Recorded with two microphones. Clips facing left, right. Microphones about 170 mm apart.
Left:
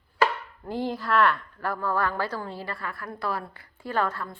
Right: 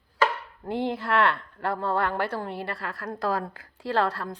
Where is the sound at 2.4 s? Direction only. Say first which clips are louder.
Right 2 dB; 65° right (ahead or behind); by 3.4 s 90° right.